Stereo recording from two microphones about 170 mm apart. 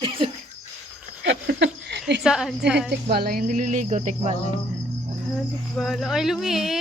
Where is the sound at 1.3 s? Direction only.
90° right.